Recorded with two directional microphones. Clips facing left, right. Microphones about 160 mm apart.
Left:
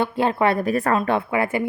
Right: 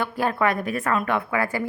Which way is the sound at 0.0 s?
25° left (ahead or behind).